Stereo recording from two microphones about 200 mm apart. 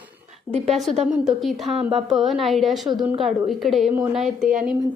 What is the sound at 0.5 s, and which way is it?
Speech, 30° right (ahead or behind).